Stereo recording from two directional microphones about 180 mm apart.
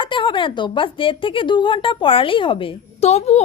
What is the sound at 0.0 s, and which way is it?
A woman's voice, 25° left (ahead or behind).